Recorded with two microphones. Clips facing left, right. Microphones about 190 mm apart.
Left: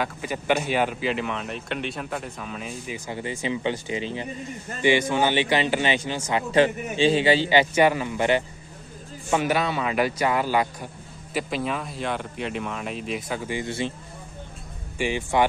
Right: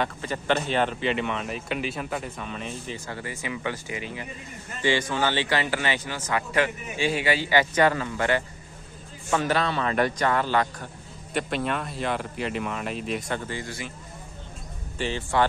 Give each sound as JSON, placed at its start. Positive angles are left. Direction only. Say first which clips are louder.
{"t": 0.0, "sound": "speech", "louder": "even", "side_deg": 10}
{"t": 3.1, "sound": "a man's voice", "louder": "left 7 dB", "side_deg": 20}
{"t": 13.5, "sound": "a man's voice", "louder": "left 6 dB", "side_deg": 20}
{"t": 15.0, "sound": "a man's voice", "louder": "left 2 dB", "side_deg": 15}